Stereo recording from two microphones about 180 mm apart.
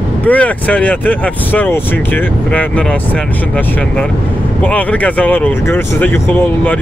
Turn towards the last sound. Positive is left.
turn(degrees=10)  # may be behind; listen again after turning